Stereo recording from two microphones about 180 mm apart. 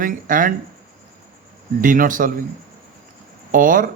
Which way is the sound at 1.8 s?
50° right (ahead or behind).